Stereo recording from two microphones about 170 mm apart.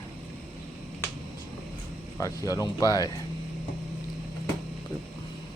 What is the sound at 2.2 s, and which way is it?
Speech, 20° left (ahead or behind).